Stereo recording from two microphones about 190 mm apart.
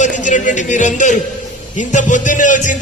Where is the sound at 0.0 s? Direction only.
40° left (ahead or behind).